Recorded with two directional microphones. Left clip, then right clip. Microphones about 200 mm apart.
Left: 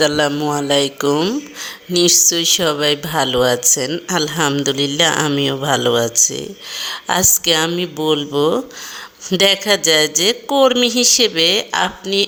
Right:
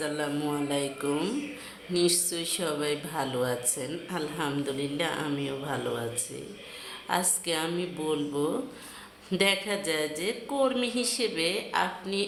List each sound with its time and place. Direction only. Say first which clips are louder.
0.0 s speech: left 15 dB; 40° left (ahead or behind)